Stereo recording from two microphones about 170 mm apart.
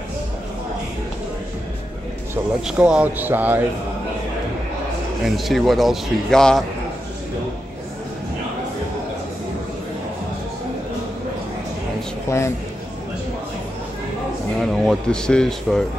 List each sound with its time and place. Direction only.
2.6 s speech: 5° right (ahead or behind)
5.2 s a man's voice: centre (ahead or behind)
12.3 s a man's voice: 15° left (ahead or behind)
14.6 s a man's voice: centre (ahead or behind)